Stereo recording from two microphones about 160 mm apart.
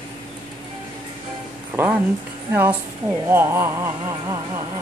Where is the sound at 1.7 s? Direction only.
15° right (ahead or behind).